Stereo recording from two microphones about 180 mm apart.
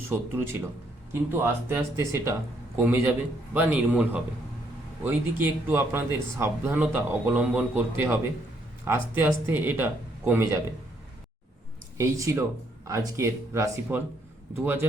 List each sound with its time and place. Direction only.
0.1 s speech: 10° right (ahead or behind)
11.9 s speech: 15° right (ahead or behind)